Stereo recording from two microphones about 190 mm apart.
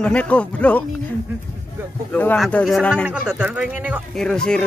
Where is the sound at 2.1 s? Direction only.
10° left (ahead or behind); by 4.0 s 10° right (ahead or behind).